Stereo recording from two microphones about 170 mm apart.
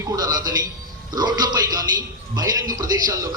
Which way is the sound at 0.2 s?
20° right (ahead or behind).